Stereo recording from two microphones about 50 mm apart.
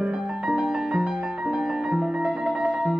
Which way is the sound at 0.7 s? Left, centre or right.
Centre.